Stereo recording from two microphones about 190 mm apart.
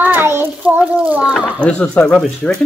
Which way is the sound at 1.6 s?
5° left (ahead or behind).